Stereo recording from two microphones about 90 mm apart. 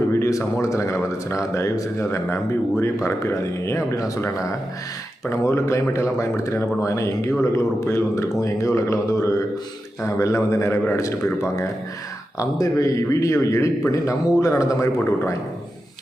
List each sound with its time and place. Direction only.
0.1 s speech: 35° left (ahead or behind)
12.4 s speech: 40° left (ahead or behind)